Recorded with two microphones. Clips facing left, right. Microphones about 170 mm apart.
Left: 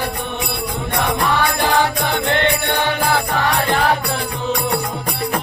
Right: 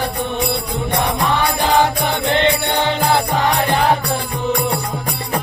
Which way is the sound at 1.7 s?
20° right (ahead or behind).